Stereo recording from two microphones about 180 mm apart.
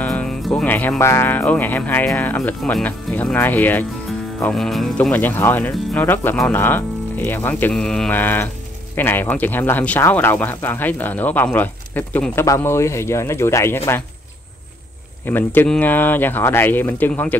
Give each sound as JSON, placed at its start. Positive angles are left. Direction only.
{"t": 0.0, "sound": "speech", "side_deg": 5}
{"t": 15.2, "sound": "speech", "side_deg": 10}